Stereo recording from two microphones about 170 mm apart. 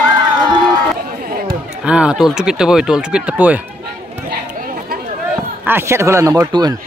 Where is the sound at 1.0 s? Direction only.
55° right (ahead or behind).